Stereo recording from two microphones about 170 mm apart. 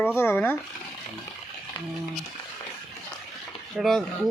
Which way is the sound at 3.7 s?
Centre (ahead or behind).